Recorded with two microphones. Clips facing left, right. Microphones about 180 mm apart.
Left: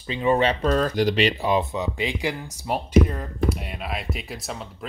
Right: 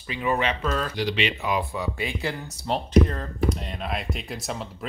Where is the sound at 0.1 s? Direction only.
25° left (ahead or behind).